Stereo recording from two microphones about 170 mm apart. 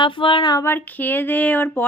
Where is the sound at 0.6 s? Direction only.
10° left (ahead or behind).